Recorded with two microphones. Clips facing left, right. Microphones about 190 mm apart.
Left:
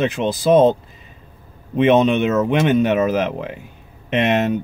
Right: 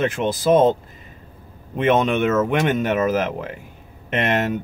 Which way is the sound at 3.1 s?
45° right (ahead or behind).